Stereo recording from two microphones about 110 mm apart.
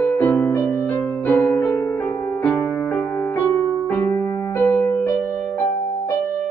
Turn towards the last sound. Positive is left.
turn(degrees=20)  # may be behind; listen again after turning